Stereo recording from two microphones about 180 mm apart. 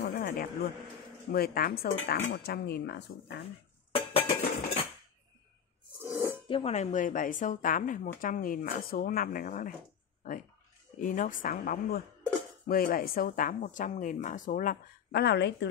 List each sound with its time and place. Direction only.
0.0 s a sound: 55° left (ahead or behind)
1.3 s speech: 55° left (ahead or behind)
3.9 s dishes: 30° left (ahead or behind)
6.0 s a sound: 15° right (ahead or behind)
6.5 s a woman's voice: 35° left (ahead or behind)
11.0 s a woman's voice: 45° left (ahead or behind); by 15.7 s 70° left (ahead or behind)